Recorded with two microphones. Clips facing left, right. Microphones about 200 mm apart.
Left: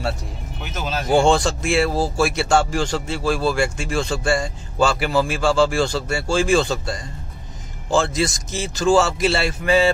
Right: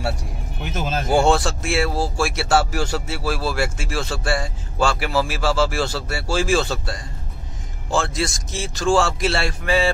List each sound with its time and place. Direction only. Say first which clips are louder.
0.7 s speech: right 2 dB; 50° right (ahead or behind)
1.0 s speech: left 2 dB; 5° right (ahead or behind)